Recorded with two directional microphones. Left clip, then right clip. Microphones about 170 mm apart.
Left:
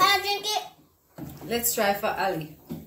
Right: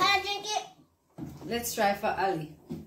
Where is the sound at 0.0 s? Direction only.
10° left (ahead or behind).